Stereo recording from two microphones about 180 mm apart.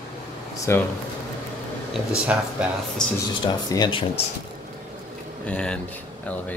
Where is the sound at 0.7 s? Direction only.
15° left (ahead or behind).